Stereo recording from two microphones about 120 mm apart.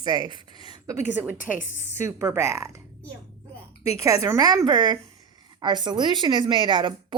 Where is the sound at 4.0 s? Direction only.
25° right (ahead or behind).